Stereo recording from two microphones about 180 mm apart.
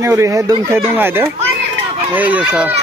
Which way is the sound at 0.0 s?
15° right (ahead or behind).